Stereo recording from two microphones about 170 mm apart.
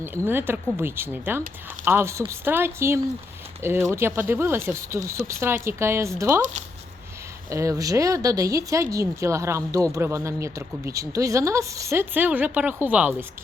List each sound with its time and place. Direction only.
0.3 s speech: 10° right (ahead or behind)
7.5 s speech: 20° right (ahead or behind)